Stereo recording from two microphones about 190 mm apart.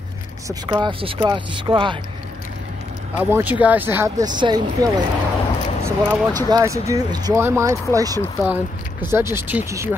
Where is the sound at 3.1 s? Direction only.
10° right (ahead or behind).